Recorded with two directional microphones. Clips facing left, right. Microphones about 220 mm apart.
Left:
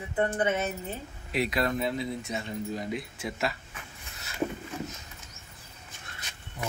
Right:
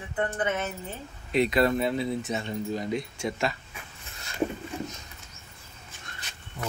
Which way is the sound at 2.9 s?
5° left (ahead or behind).